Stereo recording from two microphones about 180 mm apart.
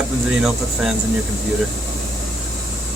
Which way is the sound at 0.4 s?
5° right (ahead or behind).